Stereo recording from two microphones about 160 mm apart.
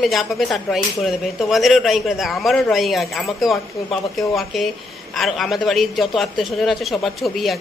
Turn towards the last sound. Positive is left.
turn(degrees=0)  # may be behind; listen again after turning